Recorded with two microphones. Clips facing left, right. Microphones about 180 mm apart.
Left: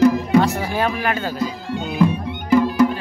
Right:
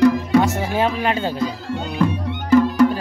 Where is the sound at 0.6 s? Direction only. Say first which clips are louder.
Right 1 dB; 20° right (ahead or behind).